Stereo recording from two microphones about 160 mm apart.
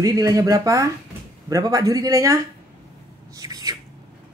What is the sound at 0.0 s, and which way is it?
Speech, 20° right (ahead or behind).